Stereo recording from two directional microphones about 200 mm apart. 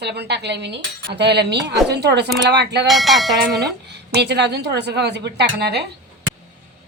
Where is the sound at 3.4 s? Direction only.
55° right (ahead or behind).